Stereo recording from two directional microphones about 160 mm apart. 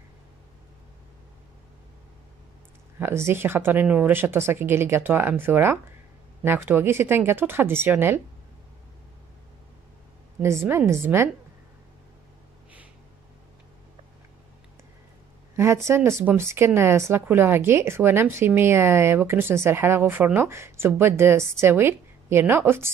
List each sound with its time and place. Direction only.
3.0 s speech: 15° right (ahead or behind)
10.4 s speech: 15° right (ahead or behind)
15.5 s speech: 15° right (ahead or behind)